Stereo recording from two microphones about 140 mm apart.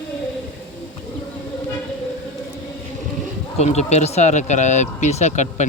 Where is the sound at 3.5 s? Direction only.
50° left (ahead or behind).